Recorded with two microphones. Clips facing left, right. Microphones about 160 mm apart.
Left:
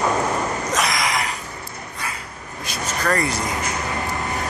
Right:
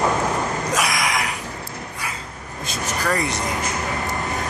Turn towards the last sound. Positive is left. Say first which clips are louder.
# left 1 dB
turn(degrees=0)  # may be behind; listen again after turning